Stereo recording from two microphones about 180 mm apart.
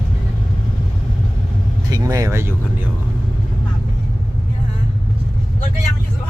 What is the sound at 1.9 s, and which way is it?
Speech, 20° right (ahead or behind).